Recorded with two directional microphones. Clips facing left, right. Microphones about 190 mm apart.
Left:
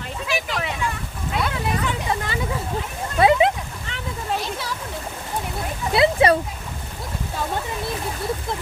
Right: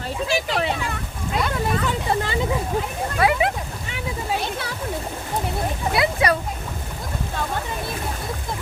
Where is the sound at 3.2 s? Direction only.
25° left (ahead or behind).